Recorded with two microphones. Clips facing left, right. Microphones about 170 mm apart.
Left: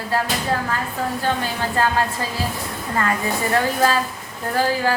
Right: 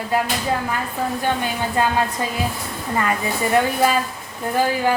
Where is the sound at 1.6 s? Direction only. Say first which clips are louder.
Even; 20° right (ahead or behind).